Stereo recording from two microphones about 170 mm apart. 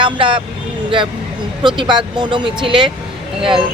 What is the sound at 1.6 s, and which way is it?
Speech, 25° right (ahead or behind).